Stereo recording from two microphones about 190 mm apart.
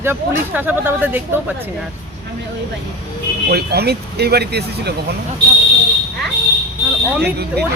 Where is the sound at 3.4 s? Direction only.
55° right (ahead or behind).